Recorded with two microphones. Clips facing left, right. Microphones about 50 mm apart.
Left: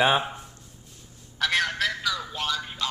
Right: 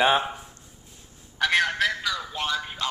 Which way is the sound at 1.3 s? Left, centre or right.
Centre.